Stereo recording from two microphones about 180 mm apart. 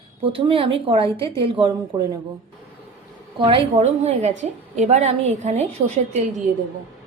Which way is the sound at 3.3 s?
30° right (ahead or behind).